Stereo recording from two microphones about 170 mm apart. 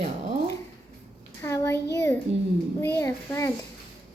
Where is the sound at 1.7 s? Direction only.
75° left (ahead or behind).